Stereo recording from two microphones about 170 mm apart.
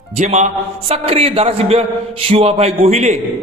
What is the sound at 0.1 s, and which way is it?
A man's voice, 40° right (ahead or behind).